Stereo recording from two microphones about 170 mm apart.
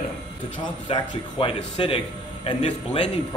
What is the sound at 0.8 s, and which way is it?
A man's voice, 30° left (ahead or behind).